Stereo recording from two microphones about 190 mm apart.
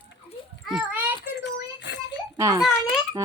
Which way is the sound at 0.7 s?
5° right (ahead or behind).